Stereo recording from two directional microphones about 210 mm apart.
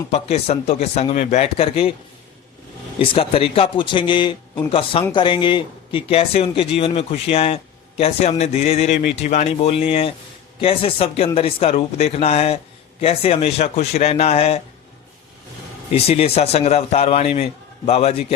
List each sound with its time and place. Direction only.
0.1 s speech: 30° left (ahead or behind)
3.0 s speech: 25° left (ahead or behind)
15.9 s speech: 30° left (ahead or behind)